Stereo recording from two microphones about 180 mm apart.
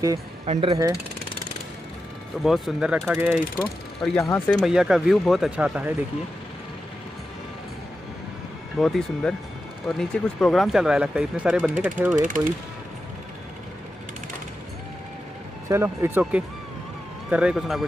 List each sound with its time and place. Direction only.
0.5 s speech: 30° right (ahead or behind)
2.4 s speech: centre (ahead or behind)
8.7 s speech: centre (ahead or behind)
15.7 s speech: 15° right (ahead or behind)